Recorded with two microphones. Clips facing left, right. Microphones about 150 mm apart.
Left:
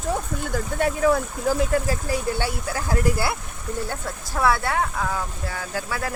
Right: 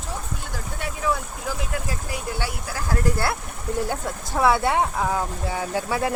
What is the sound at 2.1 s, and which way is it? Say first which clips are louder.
Speech: left 5 dB; 25° left (ahead or behind).